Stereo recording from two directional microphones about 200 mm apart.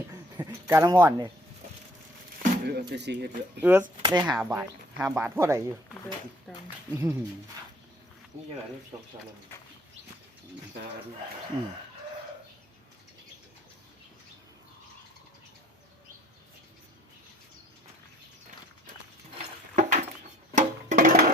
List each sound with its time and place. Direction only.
0.3 s speech: 15° right (ahead or behind)
2.4 s speech: 55° right (ahead or behind)
3.6 s speech: 10° right (ahead or behind)
4.0 s speech: 20° right (ahead or behind)
4.4 s speech: 10° right (ahead or behind)
6.5 s speech: centre (ahead or behind)
6.9 s speech: 10° right (ahead or behind)
19.3 s a sound: 35° right (ahead or behind)
20.6 s music: 40° right (ahead or behind)